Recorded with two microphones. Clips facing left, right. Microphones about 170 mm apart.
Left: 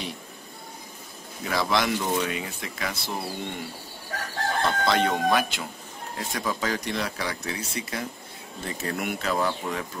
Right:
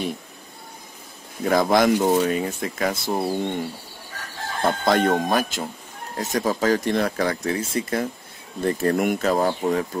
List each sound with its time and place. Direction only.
1.4 s speech: 50° right (ahead or behind)